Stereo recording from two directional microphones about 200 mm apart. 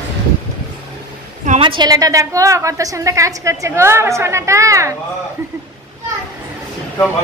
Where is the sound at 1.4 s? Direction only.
30° right (ahead or behind).